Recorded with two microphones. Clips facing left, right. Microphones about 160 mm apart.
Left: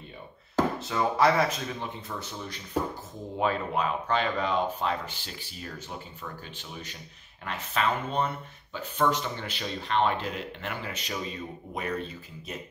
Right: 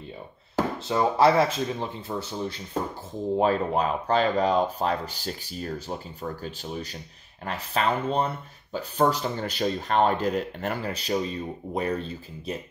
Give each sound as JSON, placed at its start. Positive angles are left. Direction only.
{"t": 0.8, "sound": "speech", "side_deg": -30}